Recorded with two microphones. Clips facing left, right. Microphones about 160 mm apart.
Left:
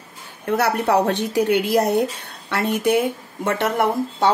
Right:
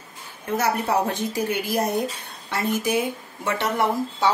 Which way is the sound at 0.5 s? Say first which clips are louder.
Left 4 dB; 70° left (ahead or behind).